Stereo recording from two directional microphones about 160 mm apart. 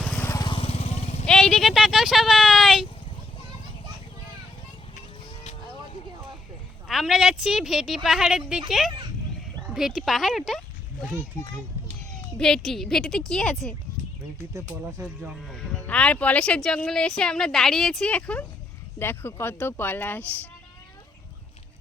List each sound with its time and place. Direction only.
0.2 s vehicle: 20° left (ahead or behind)
0.5 s vehicle: 40° left (ahead or behind)
1.3 s speech: centre (ahead or behind)
5.4 s music: 40° left (ahead or behind)
6.8 s speech: centre (ahead or behind)
9.6 s speech: 5° right (ahead or behind)
12.4 s speech: 5° left (ahead or behind)
14.5 s speech: 20° right (ahead or behind)
15.0 s speech: 5° right (ahead or behind); by 20.5 s 10° left (ahead or behind)